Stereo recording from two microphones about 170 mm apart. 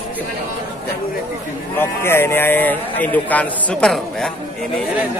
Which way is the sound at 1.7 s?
15° left (ahead or behind).